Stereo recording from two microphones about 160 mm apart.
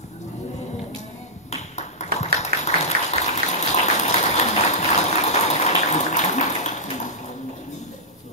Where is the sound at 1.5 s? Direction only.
45° left (ahead or behind).